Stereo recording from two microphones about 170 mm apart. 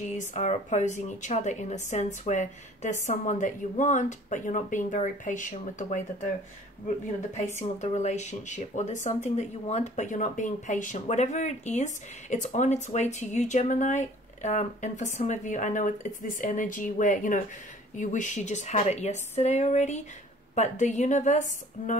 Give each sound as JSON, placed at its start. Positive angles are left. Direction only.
{"t": 0.1, "sound": "speech", "side_deg": 45}
{"t": 7.8, "sound": "speech", "side_deg": 40}